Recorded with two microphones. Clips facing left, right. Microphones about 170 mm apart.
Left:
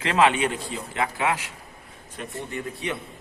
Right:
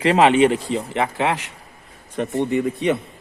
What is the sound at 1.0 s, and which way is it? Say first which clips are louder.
Speech: right 3 dB; 25° right (ahead or behind).